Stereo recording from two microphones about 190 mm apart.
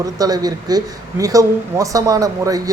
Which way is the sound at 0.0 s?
20° right (ahead or behind).